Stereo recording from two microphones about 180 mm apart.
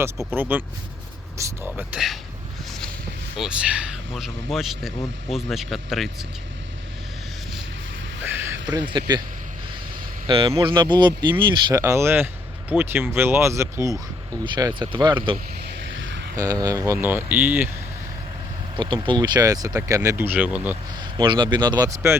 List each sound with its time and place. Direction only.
0.3 s speech: 10° right (ahead or behind)
3.3 s speech: 5° right (ahead or behind)
8.2 s a sound: 10° right (ahead or behind)
8.7 s speech: 25° right (ahead or behind)
10.2 s speech: 30° right (ahead or behind); by 17.7 s 10° right (ahead or behind)
18.8 s speech: 25° right (ahead or behind); by 20.7 s 10° right (ahead or behind)
21.0 s speech: 25° right (ahead or behind)